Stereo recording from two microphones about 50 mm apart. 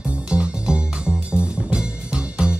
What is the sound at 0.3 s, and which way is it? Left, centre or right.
Music, right.